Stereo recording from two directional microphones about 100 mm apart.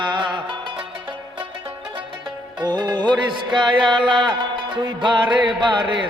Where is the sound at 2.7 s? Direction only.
45° right (ahead or behind).